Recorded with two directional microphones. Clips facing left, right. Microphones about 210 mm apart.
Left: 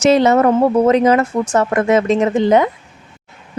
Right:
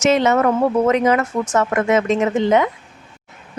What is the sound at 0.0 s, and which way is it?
A woman's voice, 35° left (ahead or behind).